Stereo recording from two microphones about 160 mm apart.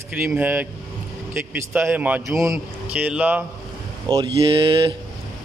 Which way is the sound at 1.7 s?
10° right (ahead or behind).